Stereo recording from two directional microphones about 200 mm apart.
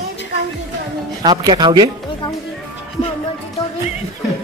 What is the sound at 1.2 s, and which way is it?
Speech, 20° right (ahead or behind).